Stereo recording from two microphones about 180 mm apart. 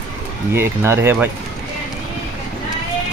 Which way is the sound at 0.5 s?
15° right (ahead or behind).